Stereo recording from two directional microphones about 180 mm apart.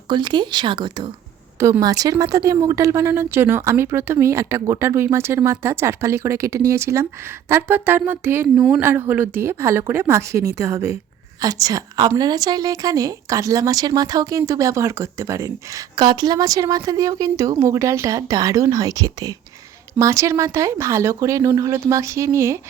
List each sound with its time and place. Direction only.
0.1 s a woman's voice: 25° right (ahead or behind)